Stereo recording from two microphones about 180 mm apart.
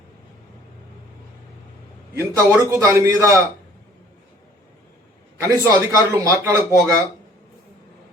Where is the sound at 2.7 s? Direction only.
15° right (ahead or behind).